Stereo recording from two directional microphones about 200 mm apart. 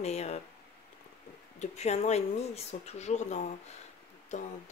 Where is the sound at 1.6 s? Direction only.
35° left (ahead or behind).